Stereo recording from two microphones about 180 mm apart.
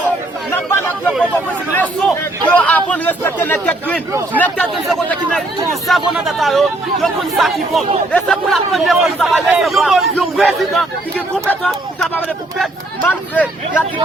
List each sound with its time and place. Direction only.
0.5 s chatter: 10° left (ahead or behind)
1.7 s a man's voice: 10° left (ahead or behind)